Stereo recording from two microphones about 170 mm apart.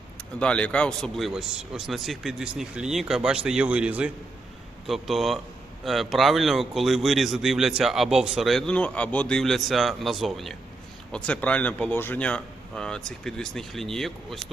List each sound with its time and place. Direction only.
0.3 s a man's voice: 5° left (ahead or behind)